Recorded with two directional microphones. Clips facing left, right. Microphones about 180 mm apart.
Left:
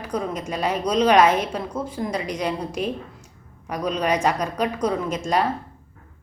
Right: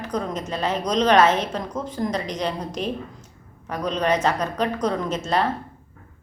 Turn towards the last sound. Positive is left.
turn(degrees=10)  # may be behind; listen again after turning